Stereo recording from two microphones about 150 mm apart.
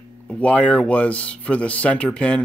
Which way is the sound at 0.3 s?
10° left (ahead or behind).